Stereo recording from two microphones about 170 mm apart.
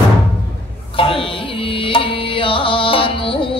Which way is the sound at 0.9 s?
30° left (ahead or behind).